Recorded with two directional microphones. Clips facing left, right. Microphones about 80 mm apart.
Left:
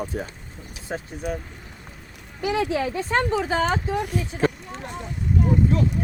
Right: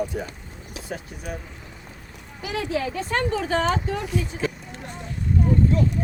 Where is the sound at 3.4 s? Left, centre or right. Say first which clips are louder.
Even; centre.